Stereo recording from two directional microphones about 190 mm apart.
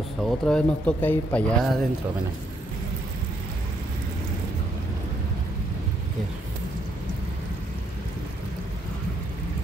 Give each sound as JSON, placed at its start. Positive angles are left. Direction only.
{"t": 0.2, "sound": "speech", "side_deg": 5}